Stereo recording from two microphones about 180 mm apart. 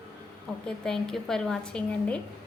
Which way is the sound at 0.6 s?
5° left (ahead or behind).